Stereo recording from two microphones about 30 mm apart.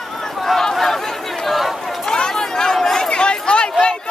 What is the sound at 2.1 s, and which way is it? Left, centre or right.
Chatter, centre.